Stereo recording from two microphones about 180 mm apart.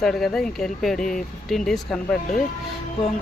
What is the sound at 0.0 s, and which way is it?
Speech, centre (ahead or behind).